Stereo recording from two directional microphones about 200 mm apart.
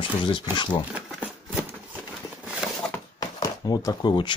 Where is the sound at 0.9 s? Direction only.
5° right (ahead or behind).